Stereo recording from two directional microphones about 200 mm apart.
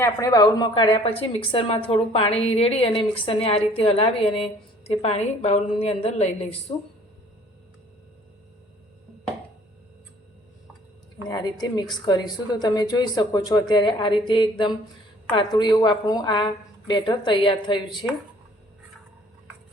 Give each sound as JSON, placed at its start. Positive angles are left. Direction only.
{"t": 0.0, "sound": "a woman's voice", "side_deg": 15}
{"t": 11.3, "sound": "a woman's voice", "side_deg": 20}